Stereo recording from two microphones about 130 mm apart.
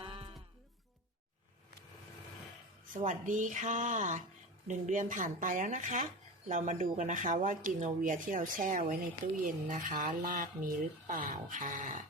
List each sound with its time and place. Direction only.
0.0 s music: 45° right (ahead or behind)
2.9 s speech: 75° right (ahead or behind)